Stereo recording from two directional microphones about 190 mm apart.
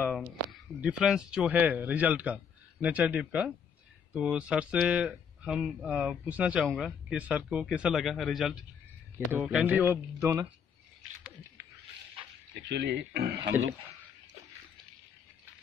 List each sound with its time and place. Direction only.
0.1 s speech: centre (ahead or behind)
12.5 s speech: 60° right (ahead or behind)